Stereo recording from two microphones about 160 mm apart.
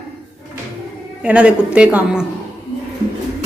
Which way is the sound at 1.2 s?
5° right (ahead or behind).